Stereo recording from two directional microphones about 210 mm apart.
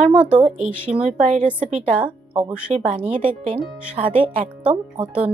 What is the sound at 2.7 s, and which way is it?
Speech, 35° right (ahead or behind).